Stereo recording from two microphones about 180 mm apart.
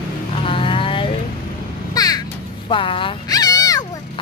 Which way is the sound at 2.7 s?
30° left (ahead or behind).